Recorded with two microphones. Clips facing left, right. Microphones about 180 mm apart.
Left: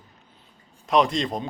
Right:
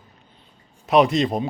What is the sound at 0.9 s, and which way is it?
Speech, 10° right (ahead or behind).